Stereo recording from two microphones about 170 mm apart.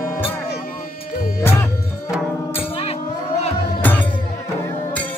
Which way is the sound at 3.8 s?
10° left (ahead or behind).